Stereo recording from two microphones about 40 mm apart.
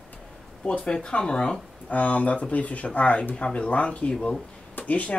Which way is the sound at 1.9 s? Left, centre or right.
Left.